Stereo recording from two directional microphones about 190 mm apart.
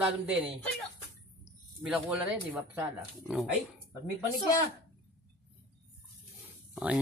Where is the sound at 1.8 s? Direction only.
5° right (ahead or behind).